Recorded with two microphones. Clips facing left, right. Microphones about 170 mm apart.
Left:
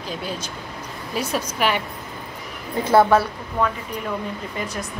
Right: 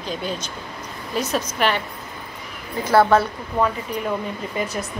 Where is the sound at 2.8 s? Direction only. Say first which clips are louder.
Even; 15° left (ahead or behind).